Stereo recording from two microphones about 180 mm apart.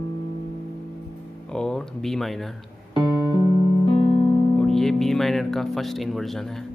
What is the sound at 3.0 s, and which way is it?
Music, 25° left (ahead or behind).